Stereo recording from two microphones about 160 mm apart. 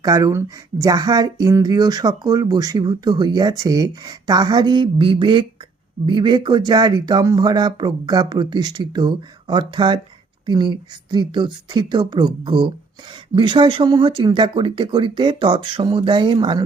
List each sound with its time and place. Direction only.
0.0 s speech: 25° right (ahead or behind)